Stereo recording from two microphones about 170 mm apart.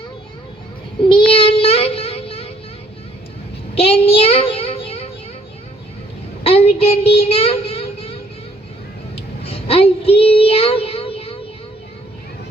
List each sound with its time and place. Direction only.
1.0 s child singing: 30° left (ahead or behind)
3.8 s child singing: 35° left (ahead or behind)
6.4 s child singing: 35° left (ahead or behind)